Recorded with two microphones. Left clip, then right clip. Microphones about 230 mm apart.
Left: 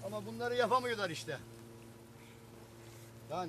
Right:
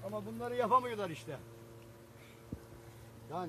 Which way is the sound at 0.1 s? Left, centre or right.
Centre.